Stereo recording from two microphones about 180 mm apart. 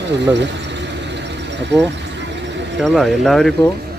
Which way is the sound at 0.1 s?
75° right (ahead or behind).